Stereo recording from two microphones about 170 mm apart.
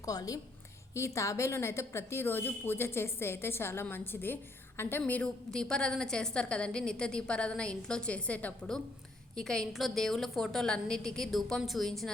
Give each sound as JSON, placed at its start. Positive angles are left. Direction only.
{"t": 0.0, "sound": "a woman's voice", "side_deg": 20}